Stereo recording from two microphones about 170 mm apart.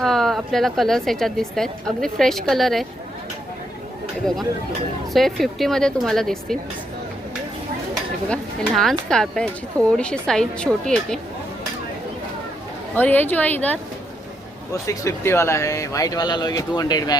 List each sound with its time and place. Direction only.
0.0 s a woman's voice: centre (ahead or behind)
5.1 s a woman's voice: centre (ahead or behind)
8.3 s a woman's voice: centre (ahead or behind)
13.0 s a woman's voice: 10° left (ahead or behind)